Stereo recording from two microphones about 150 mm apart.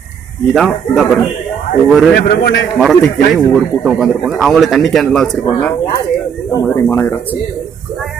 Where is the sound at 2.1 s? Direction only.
90° left.